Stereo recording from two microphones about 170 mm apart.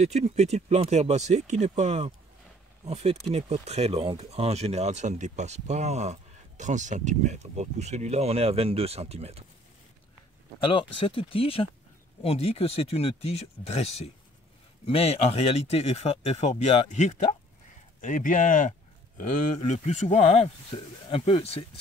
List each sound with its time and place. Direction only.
0.0 s speech: 40° right (ahead or behind)
10.6 s speech: 30° left (ahead or behind)